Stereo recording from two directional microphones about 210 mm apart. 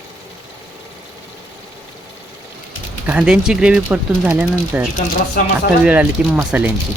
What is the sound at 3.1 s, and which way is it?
Speech, 5° right (ahead or behind).